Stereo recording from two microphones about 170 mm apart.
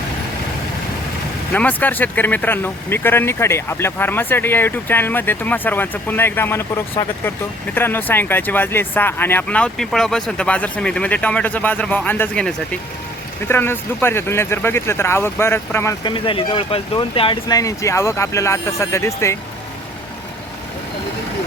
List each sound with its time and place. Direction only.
1.5 s speech: 10° left (ahead or behind)
16.0 s speech: 30° left (ahead or behind)